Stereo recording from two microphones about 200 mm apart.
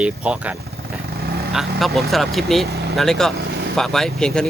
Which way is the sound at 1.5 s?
Centre (ahead or behind).